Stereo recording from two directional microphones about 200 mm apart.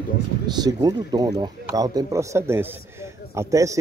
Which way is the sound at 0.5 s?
20° right (ahead or behind).